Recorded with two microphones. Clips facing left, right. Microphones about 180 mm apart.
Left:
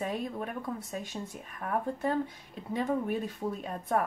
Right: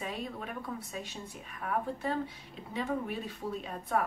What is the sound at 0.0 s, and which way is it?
Speech, 45° left (ahead or behind).